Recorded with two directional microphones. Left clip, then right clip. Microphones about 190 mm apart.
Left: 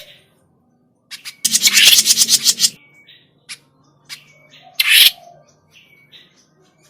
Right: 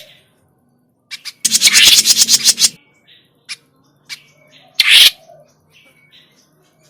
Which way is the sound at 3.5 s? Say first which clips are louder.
Right 5 dB; 15° right (ahead or behind).